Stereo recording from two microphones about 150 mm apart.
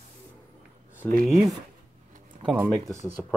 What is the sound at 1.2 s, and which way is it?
Speech, centre (ahead or behind).